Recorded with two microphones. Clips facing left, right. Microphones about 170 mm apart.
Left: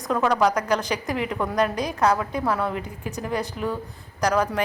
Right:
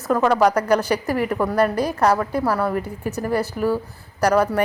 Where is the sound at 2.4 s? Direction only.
5° right (ahead or behind).